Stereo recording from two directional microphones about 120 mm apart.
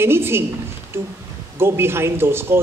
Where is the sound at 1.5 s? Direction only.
20° right (ahead or behind).